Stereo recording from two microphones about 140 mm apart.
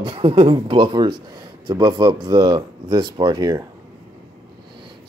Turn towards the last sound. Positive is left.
turn(degrees=-30)  # may be behind; listen again after turning